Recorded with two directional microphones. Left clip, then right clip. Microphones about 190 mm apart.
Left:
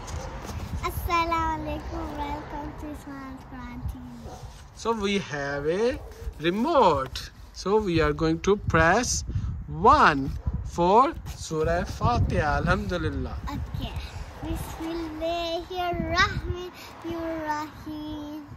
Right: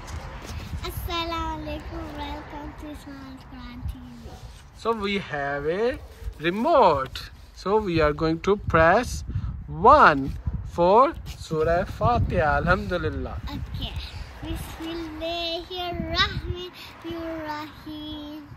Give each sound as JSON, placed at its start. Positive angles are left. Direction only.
{"t": 0.8, "sound": "a sound", "side_deg": 35}
{"t": 1.7, "sound": "child singing", "side_deg": 40}
{"t": 4.8, "sound": "speech", "side_deg": 15}
{"t": 14.4, "sound": "speech", "side_deg": 45}
{"t": 15.3, "sound": "speech", "side_deg": 10}
{"t": 16.5, "sound": "speech", "side_deg": 40}
{"t": 17.9, "sound": "speech", "side_deg": 10}